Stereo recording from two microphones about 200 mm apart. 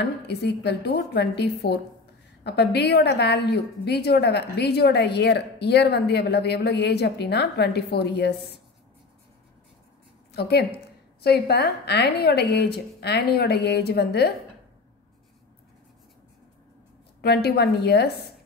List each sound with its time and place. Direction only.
0.0 s a woman's voice: 55° left (ahead or behind)
10.3 s a woman's voice: 55° left (ahead or behind)
17.2 s a woman's voice: 55° left (ahead or behind)